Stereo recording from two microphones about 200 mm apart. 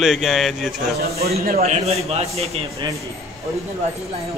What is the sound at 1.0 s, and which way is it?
Speech, 50° right (ahead or behind).